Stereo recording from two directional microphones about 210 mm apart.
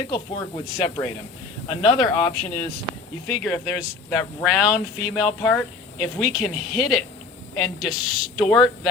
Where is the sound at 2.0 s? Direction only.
20° left (ahead or behind).